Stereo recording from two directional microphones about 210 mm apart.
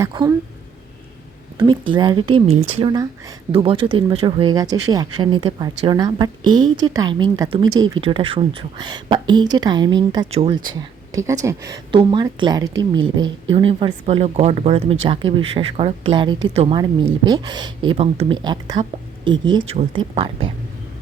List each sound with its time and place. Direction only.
0.0 s a woman's voice: 15° right (ahead or behind)
1.5 s a woman's voice: 20° right (ahead or behind)